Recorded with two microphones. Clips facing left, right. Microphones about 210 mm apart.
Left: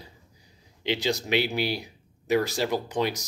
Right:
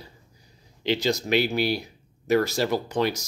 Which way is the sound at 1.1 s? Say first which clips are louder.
Right 2 dB; 40° right (ahead or behind).